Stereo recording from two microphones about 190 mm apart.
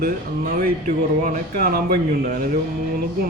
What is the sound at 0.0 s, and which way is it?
Speech, 50° right (ahead or behind).